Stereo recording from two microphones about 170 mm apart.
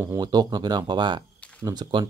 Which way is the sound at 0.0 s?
20° right (ahead or behind).